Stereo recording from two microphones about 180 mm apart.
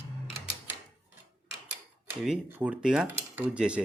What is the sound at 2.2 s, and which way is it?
Speech, 5° right (ahead or behind).